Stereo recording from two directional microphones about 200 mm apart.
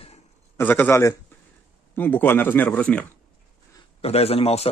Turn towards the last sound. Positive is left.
turn(degrees=30)  # may be behind; listen again after turning